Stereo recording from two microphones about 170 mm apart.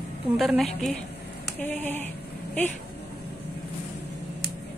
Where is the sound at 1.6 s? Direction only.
10° left (ahead or behind).